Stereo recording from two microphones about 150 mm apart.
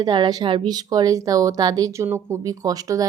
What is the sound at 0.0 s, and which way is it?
Speech, 30° right (ahead or behind).